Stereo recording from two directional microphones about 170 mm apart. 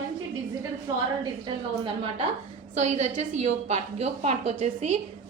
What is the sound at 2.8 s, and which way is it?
A woman's voice, 40° right (ahead or behind).